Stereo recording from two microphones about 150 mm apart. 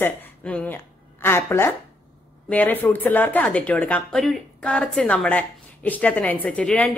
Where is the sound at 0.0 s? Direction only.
10° left (ahead or behind).